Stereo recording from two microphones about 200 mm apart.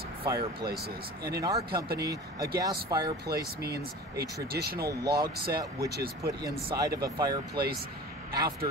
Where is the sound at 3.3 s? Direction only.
55° right (ahead or behind).